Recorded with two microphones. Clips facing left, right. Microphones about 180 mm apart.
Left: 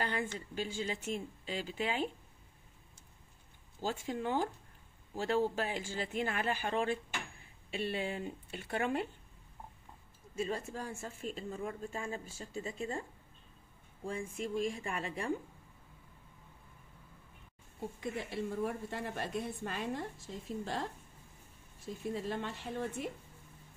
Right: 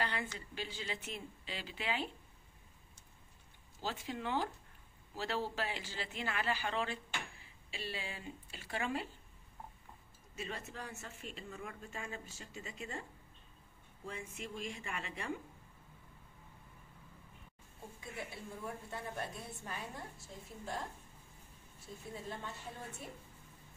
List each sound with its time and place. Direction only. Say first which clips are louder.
0.0 s a woman's voice: left 3 dB; 45° left (ahead or behind)
3.8 s speech: left 4 dB; 45° left (ahead or behind)
10.3 s speech: left 8 dB; 30° left (ahead or behind)
14.1 s speech: left 9 dB; 30° left (ahead or behind)
18.0 s a woman's voice: left 8 dB; 90° left
22.1 s a woman's voice: left 6 dB; 80° left